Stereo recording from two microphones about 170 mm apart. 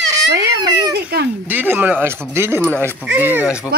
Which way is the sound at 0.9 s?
75° right (ahead or behind).